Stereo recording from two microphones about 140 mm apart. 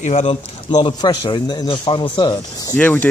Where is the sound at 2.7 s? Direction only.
10° left (ahead or behind).